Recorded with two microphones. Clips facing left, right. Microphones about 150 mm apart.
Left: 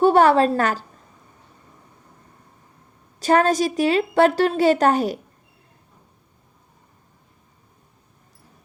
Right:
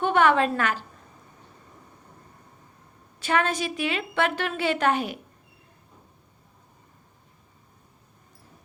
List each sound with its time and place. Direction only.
0.0 s a woman's voice: 35° left (ahead or behind)
3.2 s a woman's voice: 40° left (ahead or behind)